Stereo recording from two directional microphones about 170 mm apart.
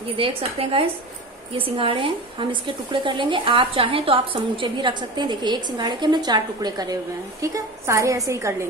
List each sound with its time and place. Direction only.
0.2 s a woman's voice: 35° right (ahead or behind); by 8.6 s 15° right (ahead or behind)